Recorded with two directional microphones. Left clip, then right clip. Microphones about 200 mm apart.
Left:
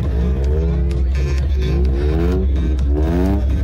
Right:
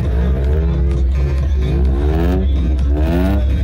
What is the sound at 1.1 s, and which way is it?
Music, 40° left (ahead or behind).